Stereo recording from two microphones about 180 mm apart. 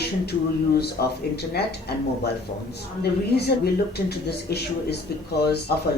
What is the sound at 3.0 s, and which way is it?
Speech, 60° left (ahead or behind).